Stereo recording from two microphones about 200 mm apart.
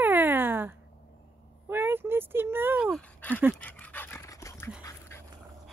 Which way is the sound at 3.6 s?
10° left (ahead or behind).